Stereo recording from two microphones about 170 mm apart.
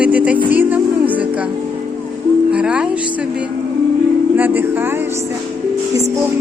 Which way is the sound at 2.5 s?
5° right (ahead or behind).